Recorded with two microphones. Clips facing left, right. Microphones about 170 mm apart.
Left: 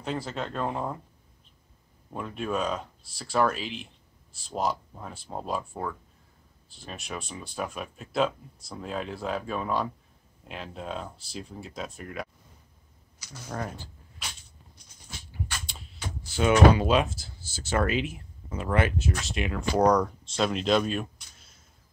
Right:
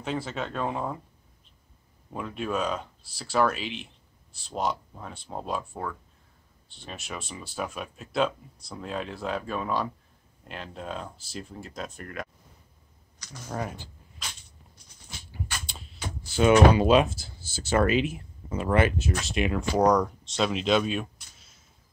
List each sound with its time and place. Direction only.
0.0 s speech: centre (ahead or behind)
2.1 s speech: centre (ahead or behind)
13.3 s speech: 10° right (ahead or behind)
16.3 s speech: 20° right (ahead or behind)
19.8 s speech: centre (ahead or behind)